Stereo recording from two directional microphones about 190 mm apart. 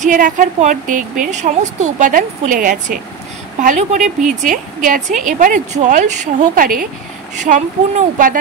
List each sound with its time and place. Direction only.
0.0 s a woman's voice: 45° right (ahead or behind)